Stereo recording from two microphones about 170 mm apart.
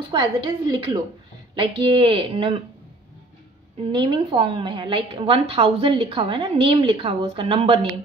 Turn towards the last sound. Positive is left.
turn(degrees=-30)  # may be behind; listen again after turning